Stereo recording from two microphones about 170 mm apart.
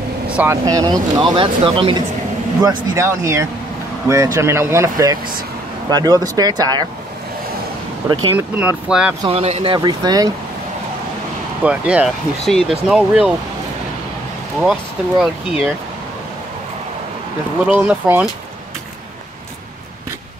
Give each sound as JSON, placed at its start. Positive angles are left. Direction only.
{"t": 0.3, "sound": "speech", "side_deg": -10}
{"t": 0.7, "sound": "speech", "side_deg": -20}
{"t": 2.6, "sound": "speech", "side_deg": -20}
{"t": 8.1, "sound": "speech", "side_deg": -25}
{"t": 8.4, "sound": "speech", "side_deg": -10}
{"t": 9.2, "sound": "speech", "side_deg": -35}
{"t": 9.8, "sound": "speech", "side_deg": -25}
{"t": 11.6, "sound": "speech", "side_deg": -5}
{"t": 14.6, "sound": "speech", "side_deg": -5}
{"t": 17.6, "sound": "speech", "side_deg": -10}